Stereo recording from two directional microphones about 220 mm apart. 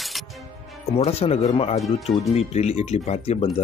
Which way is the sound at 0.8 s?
30° left (ahead or behind).